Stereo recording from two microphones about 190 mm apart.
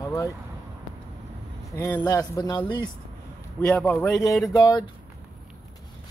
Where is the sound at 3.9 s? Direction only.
15° left (ahead or behind).